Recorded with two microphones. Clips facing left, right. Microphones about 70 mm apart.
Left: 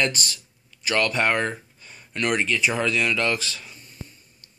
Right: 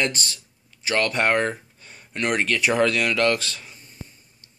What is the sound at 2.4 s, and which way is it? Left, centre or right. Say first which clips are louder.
Speech: right 3 dB; right.